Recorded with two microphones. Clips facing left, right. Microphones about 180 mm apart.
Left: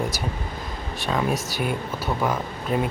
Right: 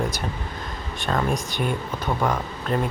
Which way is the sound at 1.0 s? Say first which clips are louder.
Even; 5° left (ahead or behind).